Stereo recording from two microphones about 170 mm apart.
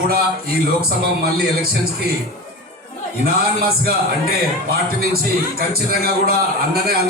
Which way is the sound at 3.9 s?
65° right (ahead or behind).